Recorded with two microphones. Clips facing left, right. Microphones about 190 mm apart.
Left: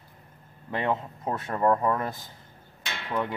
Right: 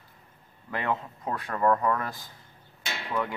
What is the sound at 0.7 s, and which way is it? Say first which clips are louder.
Speech: left 2 dB; 25° left (ahead or behind).